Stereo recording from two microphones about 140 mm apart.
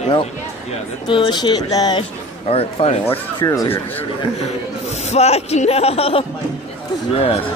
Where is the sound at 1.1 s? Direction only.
35° left (ahead or behind).